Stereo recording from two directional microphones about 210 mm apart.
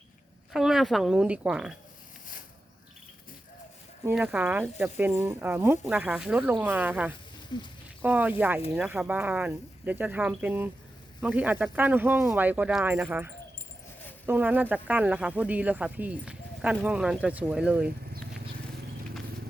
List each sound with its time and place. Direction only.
0.5 s speech: centre (ahead or behind)
4.0 s speech: 10° right (ahead or behind)
7.1 s snake: 20° left (ahead or behind)
8.0 s speech: 10° right (ahead or behind)